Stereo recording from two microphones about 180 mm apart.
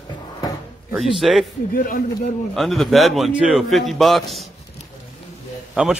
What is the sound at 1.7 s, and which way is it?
Speech, 50° left (ahead or behind).